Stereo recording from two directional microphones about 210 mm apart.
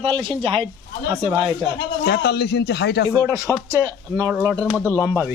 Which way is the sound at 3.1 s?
15° right (ahead or behind).